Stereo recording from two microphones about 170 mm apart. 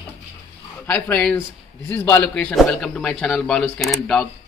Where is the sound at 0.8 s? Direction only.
10° left (ahead or behind).